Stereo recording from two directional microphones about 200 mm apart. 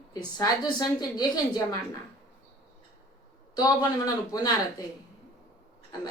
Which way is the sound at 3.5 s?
20° left (ahead or behind).